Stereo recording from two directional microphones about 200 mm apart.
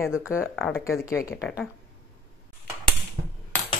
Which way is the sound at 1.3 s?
5° right (ahead or behind).